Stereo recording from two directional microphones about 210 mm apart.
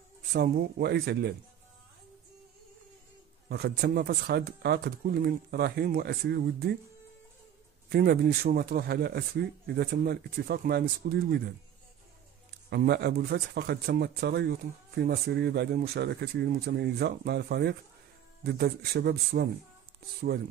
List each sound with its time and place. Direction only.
0.3 s speech: 50° right (ahead or behind)
3.4 s speech: 50° right (ahead or behind)
7.9 s speech: 45° right (ahead or behind)
12.6 s speech: 50° right (ahead or behind)